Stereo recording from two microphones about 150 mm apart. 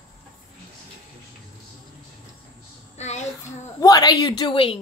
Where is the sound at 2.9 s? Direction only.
50° left (ahead or behind).